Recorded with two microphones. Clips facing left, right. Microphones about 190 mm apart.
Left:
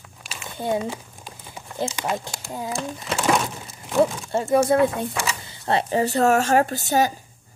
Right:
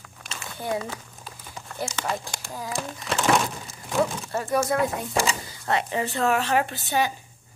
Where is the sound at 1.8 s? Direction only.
5° left (ahead or behind).